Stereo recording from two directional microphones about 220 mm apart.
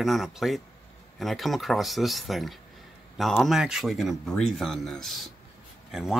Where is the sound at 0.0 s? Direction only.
Centre (ahead or behind).